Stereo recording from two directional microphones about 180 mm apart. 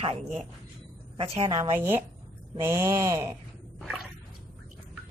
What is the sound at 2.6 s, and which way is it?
Speech, 15° right (ahead or behind).